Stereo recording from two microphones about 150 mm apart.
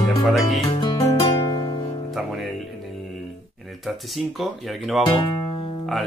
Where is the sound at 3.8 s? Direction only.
Centre (ahead or behind).